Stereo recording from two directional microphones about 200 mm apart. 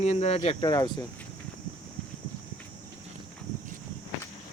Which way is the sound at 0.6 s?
20° left (ahead or behind).